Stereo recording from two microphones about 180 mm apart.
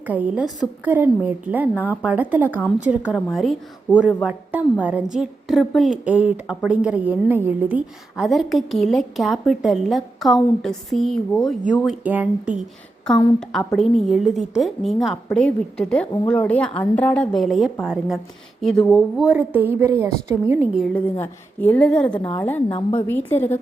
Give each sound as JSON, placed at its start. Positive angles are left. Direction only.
{"t": 0.0, "sound": "a woman's voice", "side_deg": -10}
{"t": 13.4, "sound": "a woman's voice", "side_deg": 5}
{"t": 20.7, "sound": "a woman's voice", "side_deg": 0}
{"t": 22.2, "sound": "a woman's voice", "side_deg": 25}